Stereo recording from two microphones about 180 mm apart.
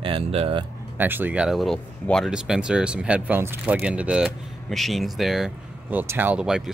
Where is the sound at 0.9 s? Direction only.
10° right (ahead or behind).